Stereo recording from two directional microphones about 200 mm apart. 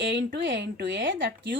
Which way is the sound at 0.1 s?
60° right (ahead or behind).